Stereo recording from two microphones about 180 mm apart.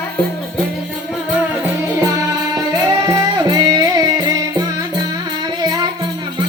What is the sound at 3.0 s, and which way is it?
Music, 20° right (ahead or behind).